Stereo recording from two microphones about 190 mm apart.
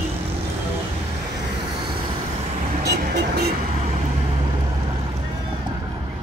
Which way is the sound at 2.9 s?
55° right (ahead or behind).